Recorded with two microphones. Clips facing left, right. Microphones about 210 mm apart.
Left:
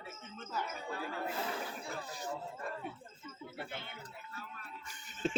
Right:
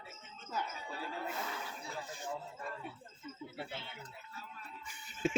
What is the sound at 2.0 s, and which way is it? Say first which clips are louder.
Chatter: left 1 dB; 35° left (ahead or behind).